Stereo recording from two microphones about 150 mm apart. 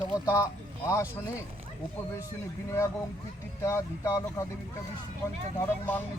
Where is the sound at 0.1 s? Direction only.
20° left (ahead or behind).